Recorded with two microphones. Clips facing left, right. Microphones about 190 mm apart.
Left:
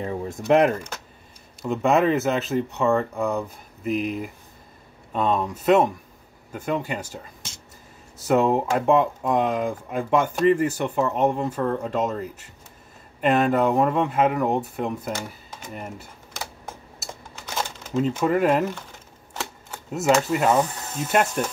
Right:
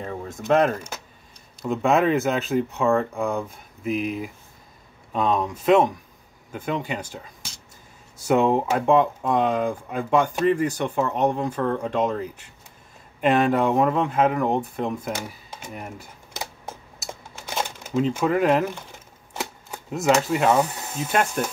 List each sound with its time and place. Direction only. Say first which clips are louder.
0.0 s speech: left 3 dB; 20° left (ahead or behind)
1.6 s speech: even; centre (ahead or behind)
8.3 s speech: even; 5° left (ahead or behind)
14.9 s speech: even; 10° right (ahead or behind)
17.6 s a sound: right 1 dB; 10° right (ahead or behind)
18.2 s speech: even; centre (ahead or behind)
19.9 s speech: even; 5° left (ahead or behind)
20.8 s speech: even; 10° right (ahead or behind)